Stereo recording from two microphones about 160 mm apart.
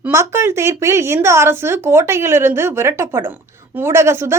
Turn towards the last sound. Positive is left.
turn(degrees=-15)  # may be behind; listen again after turning